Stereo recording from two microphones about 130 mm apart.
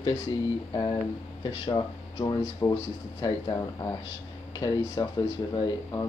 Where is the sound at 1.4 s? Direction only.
35° left (ahead or behind).